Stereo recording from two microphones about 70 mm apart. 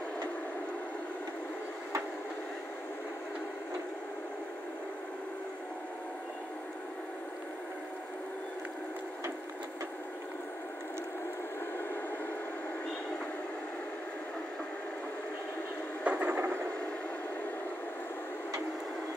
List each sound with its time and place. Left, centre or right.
16.0 s train: right